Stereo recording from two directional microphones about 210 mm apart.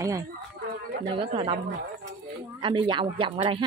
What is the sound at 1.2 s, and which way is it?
Speech, 25° right (ahead or behind).